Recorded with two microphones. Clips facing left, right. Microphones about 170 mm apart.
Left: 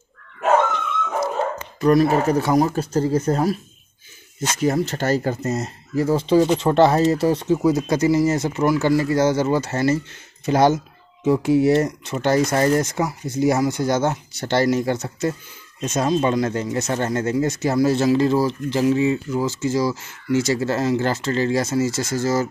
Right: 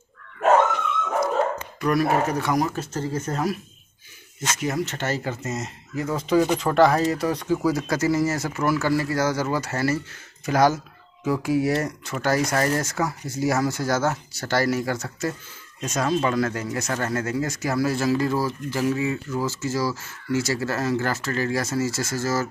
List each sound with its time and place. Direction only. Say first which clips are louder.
1.8 s speech: left 5 dB; 30° left (ahead or behind)
4.6 s speech: left 7 dB; 30° left (ahead or behind)